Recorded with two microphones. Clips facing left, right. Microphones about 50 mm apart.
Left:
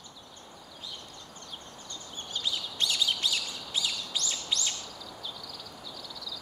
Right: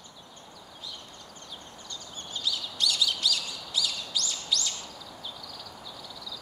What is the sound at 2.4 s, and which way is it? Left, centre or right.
Bird, left.